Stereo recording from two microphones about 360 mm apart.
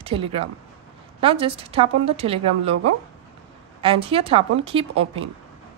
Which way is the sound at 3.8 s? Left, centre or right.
Centre.